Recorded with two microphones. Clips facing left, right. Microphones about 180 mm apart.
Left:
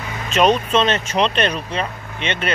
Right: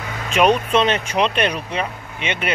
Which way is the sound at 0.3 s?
10° right (ahead or behind).